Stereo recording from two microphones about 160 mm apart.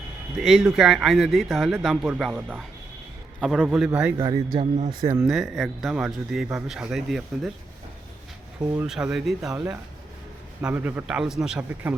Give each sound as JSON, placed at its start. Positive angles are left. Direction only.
{"t": 0.3, "sound": "speech", "side_deg": 0}
{"t": 3.4, "sound": "speech", "side_deg": 0}
{"t": 4.2, "sound": "a man's voice", "side_deg": -30}
{"t": 5.2, "sound": "speech", "side_deg": 0}
{"t": 8.7, "sound": "speech", "side_deg": -5}
{"t": 10.6, "sound": "speech", "side_deg": -10}